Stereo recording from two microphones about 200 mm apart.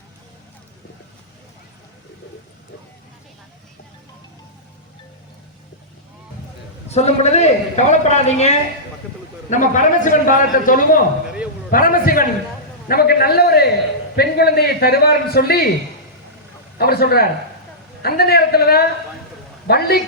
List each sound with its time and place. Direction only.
6.8 s a man's voice: 35° left (ahead or behind); by 15.7 s 50° left (ahead or behind)
16.7 s a man's voice: 50° left (ahead or behind)